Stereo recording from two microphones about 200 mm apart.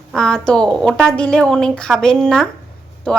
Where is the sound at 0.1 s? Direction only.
5° left (ahead or behind).